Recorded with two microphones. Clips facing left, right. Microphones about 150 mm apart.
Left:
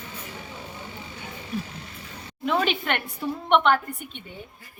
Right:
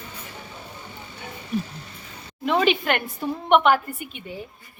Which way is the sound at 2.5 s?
Centre (ahead or behind).